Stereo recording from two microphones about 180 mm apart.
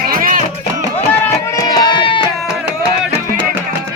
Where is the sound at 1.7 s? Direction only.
25° left (ahead or behind).